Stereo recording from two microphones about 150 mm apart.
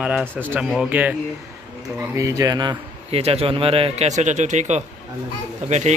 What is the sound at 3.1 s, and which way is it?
Speech, 40° right (ahead or behind).